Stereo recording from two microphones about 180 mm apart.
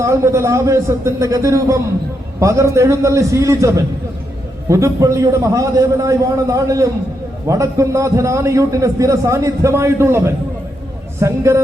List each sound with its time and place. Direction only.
0.0 s a man's voice: 15° right (ahead or behind)